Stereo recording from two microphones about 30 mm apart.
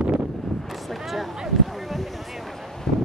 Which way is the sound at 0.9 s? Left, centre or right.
Centre.